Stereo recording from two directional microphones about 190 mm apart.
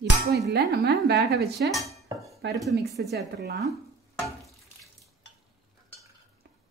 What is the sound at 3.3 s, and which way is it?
Speech, 60° right (ahead or behind).